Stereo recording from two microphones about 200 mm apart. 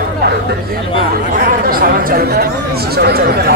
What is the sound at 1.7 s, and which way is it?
Speech, 45° right (ahead or behind).